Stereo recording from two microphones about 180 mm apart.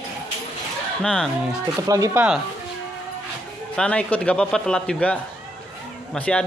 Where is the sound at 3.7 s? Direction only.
5° left (ahead or behind).